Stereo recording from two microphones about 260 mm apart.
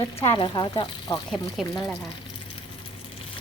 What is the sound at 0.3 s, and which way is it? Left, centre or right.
Speech, centre.